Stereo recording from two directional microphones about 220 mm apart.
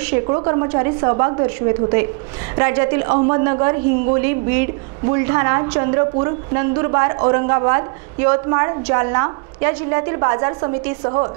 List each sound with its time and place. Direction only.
0.3 s a woman's voice: 25° right (ahead or behind)